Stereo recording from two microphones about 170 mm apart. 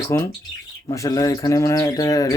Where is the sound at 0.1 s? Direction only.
15° left (ahead or behind).